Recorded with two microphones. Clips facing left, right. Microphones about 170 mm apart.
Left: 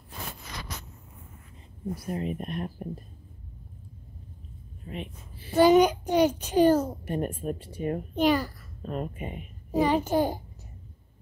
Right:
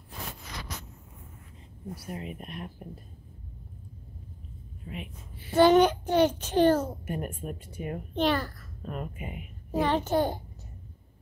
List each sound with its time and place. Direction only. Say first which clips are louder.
2.0 s speech: left 7 dB; 35° left (ahead or behind)
4.8 s a sound: left 3 dB; 35° left (ahead or behind)
5.6 s a child's voice: left 1 dB; 10° left (ahead or behind)
7.1 s speech: left 5 dB; 35° left (ahead or behind)
8.2 s a child's voice: left 3 dB; 10° left (ahead or behind)
8.9 s speech: left 5 dB; 30° left (ahead or behind)
9.7 s a child's voice: left 2 dB; 10° left (ahead or behind)